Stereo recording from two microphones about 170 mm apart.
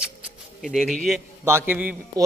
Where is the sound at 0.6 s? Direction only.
Centre (ahead or behind).